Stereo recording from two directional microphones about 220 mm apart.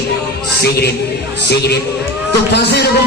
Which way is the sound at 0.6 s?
45° left (ahead or behind).